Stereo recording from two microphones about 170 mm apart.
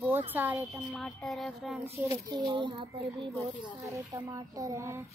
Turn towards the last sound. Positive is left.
turn(degrees=-15)  # may be behind; listen again after turning